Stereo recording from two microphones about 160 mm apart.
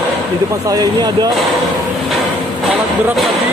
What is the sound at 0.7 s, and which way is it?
Speech, 25° right (ahead or behind).